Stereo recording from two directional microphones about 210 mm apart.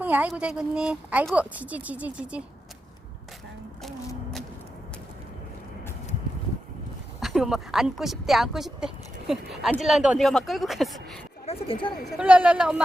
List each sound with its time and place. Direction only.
0.0 s speech: 5° right (ahead or behind)
3.8 s a sound: centre (ahead or behind)
7.2 s speech: centre (ahead or behind)
11.4 s speech: 25° left (ahead or behind)
12.1 s speech: 5° right (ahead or behind)